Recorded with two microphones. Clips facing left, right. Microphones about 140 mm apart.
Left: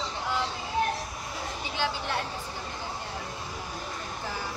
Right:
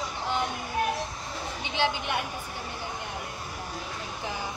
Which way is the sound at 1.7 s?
20° right (ahead or behind).